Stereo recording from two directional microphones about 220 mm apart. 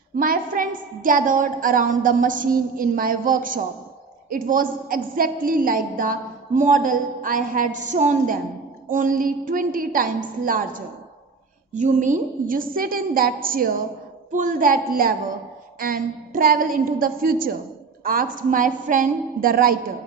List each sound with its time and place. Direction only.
0.2 s a woman's voice: 40° right (ahead or behind)